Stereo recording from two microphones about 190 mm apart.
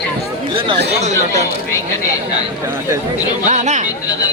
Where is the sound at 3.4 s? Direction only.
35° right (ahead or behind).